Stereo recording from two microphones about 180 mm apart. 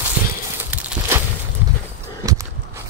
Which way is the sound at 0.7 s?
10° right (ahead or behind).